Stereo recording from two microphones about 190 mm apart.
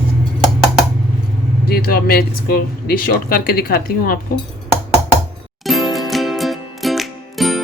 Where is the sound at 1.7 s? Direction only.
50° left (ahead or behind).